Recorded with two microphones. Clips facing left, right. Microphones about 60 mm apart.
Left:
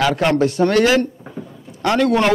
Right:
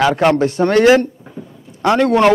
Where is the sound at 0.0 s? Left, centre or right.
Right.